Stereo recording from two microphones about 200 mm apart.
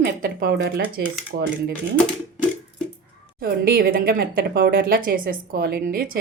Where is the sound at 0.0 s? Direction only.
45° right (ahead or behind).